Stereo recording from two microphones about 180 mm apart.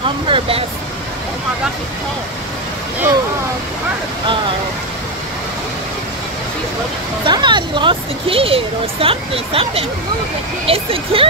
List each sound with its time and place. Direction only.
0.3 s speech: 30° right (ahead or behind)
7.2 s speech: 25° right (ahead or behind)